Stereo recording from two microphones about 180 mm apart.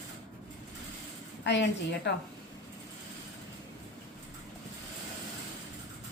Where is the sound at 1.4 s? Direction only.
75° left (ahead or behind).